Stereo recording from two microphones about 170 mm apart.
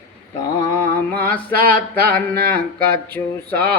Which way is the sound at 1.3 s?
60° right (ahead or behind).